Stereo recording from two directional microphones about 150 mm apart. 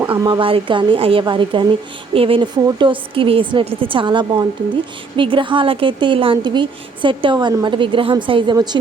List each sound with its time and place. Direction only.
0.2 s a woman's voice: 35° right (ahead or behind)